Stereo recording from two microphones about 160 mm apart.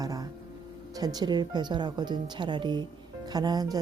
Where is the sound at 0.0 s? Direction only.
25° right (ahead or behind).